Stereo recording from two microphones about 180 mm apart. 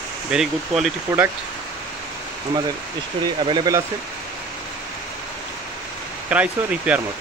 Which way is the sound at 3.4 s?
25° right (ahead or behind).